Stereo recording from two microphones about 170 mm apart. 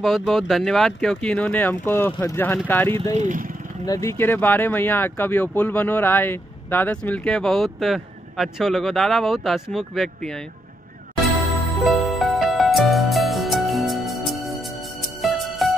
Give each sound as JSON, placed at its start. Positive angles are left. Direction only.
{"t": 0.0, "sound": "speech", "side_deg": 0}
{"t": 3.2, "sound": "speech", "side_deg": -50}
{"t": 3.8, "sound": "speech", "side_deg": 20}
{"t": 11.8, "sound": "music", "side_deg": 0}